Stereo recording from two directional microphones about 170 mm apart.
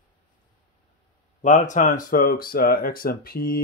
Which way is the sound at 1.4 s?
45° left (ahead or behind).